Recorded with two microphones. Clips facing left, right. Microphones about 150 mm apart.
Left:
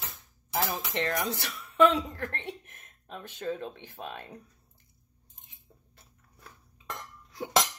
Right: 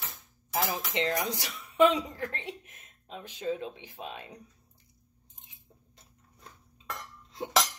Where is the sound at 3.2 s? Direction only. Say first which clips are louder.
Right 1 dB; 15° right (ahead or behind).